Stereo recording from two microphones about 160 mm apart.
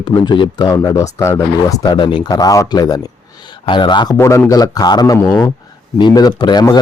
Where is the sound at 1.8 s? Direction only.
30° left (ahead or behind).